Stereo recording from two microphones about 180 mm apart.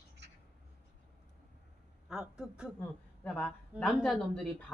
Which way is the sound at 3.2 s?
5° left (ahead or behind).